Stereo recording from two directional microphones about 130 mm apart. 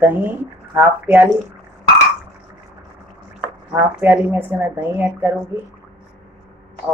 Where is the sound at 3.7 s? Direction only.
15° right (ahead or behind).